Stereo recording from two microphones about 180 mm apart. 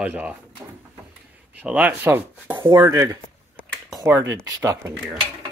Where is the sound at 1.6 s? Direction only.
5° right (ahead or behind).